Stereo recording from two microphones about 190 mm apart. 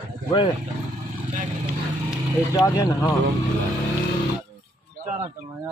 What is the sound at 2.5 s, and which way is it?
Speech, 15° left (ahead or behind).